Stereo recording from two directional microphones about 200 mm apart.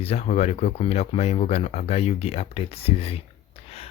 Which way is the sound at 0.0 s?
30° left (ahead or behind).